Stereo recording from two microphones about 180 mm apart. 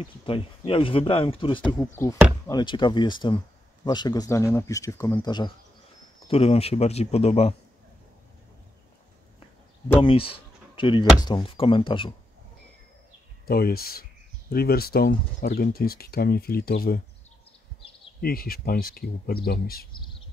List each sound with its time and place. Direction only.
0.3 s speech: 30° left (ahead or behind)
6.2 s speech: 35° left (ahead or behind)
9.9 s speech: 30° left (ahead or behind)
13.5 s speech: 55° left (ahead or behind)
18.2 s speech: 55° left (ahead or behind)